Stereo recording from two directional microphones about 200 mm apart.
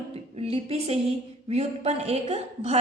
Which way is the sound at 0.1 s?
30° right (ahead or behind).